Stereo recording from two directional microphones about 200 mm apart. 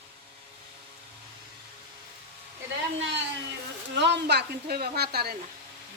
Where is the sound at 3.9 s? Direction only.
60° right (ahead or behind).